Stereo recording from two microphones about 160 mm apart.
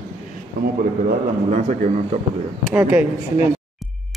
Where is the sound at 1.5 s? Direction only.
45° right (ahead or behind).